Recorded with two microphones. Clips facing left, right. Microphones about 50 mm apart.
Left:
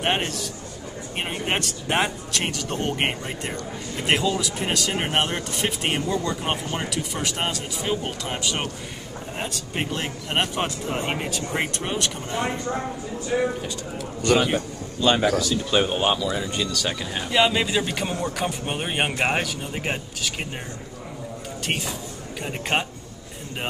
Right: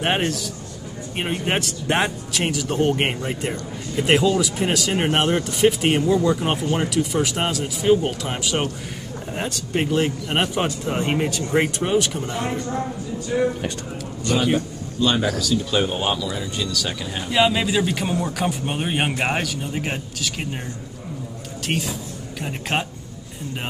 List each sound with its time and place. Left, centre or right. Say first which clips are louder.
0.0 s speech: right 3 dB; centre
12.4 s speech: left 2 dB; centre
13.3 s speech: right 2 dB; left
15.0 s speech: left 1 dB; centre
21.6 s speech: right 3 dB; centre